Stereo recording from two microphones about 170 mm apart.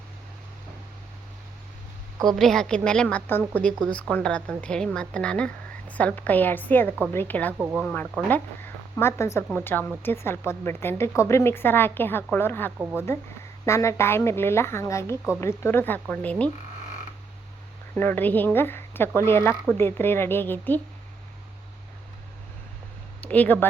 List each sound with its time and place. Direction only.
2.2 s a woman's voice: centre (ahead or behind)
7.6 s speech: 10° right (ahead or behind)
7.9 s a woman's voice: 10° left (ahead or behind)
17.9 s a woman's voice: 10° left (ahead or behind)
23.2 s speech: 10° left (ahead or behind)